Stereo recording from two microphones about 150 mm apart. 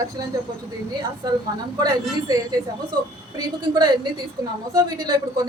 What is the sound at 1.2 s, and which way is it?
A woman's voice, 25° right (ahead or behind).